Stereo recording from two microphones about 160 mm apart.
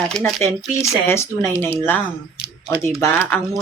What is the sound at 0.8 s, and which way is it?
Speech, 15° left (ahead or behind).